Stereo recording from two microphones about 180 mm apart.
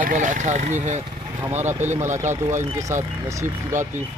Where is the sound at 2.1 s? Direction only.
45° right (ahead or behind).